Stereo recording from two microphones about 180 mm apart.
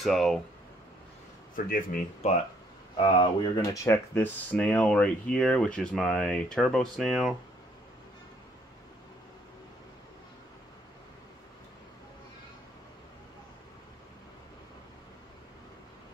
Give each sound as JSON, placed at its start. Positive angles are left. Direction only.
{"t": 0.0, "sound": "speech", "side_deg": 0}
{"t": 1.7, "sound": "speech", "side_deg": 50}
{"t": 3.0, "sound": "speech", "side_deg": 30}